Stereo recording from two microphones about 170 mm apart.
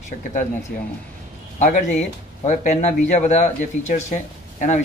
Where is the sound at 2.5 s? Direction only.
45° left (ahead or behind).